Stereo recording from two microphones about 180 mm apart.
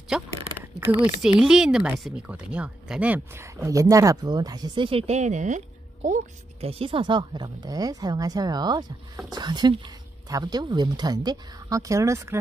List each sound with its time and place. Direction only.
0.1 s speech: 5° right (ahead or behind); by 5.6 s 40° right (ahead or behind)
6.6 s a woman's voice: 30° right (ahead or behind); by 12.4 s 15° right (ahead or behind)